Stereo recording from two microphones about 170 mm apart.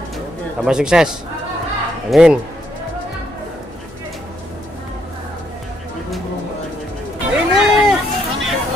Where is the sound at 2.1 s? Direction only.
5° right (ahead or behind).